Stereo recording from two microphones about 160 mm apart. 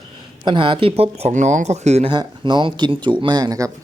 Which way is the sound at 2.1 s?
30° right (ahead or behind).